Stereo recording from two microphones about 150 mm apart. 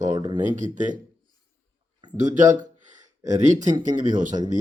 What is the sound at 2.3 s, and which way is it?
Speech, 60° right (ahead or behind).